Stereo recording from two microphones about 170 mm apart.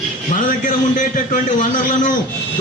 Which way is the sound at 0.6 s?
50° left (ahead or behind).